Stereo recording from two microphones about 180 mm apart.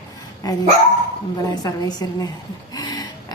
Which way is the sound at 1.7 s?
20° left (ahead or behind).